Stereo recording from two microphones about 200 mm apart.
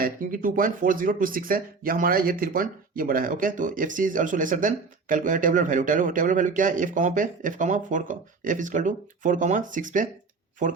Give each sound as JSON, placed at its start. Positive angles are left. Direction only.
{"t": 0.0, "sound": "speech", "side_deg": -45}